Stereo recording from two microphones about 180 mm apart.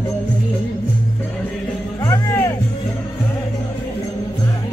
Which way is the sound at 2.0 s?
15° left (ahead or behind).